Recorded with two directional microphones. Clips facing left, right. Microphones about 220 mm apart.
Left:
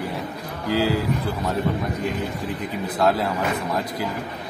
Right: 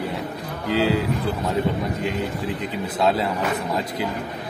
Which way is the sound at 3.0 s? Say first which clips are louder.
Even; centre (ahead or behind).